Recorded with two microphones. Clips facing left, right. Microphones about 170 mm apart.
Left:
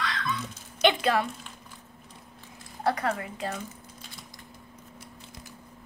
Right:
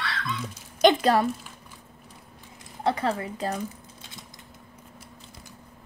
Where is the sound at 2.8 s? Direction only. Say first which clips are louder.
Right 2 dB; 25° right (ahead or behind).